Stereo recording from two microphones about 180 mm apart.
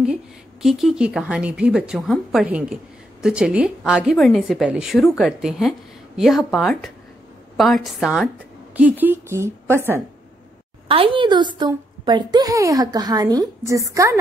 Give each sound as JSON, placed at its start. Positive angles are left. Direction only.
{"t": 0.0, "sound": "a woman's voice", "side_deg": -5}
{"t": 10.9, "sound": "a woman's voice", "side_deg": -30}